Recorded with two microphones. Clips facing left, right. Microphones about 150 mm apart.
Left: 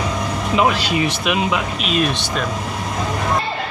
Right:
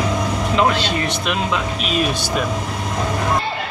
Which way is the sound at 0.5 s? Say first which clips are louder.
Left 1 dB; 10° left (ahead or behind).